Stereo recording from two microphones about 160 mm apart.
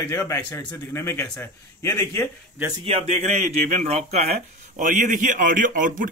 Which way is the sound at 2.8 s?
40° right (ahead or behind).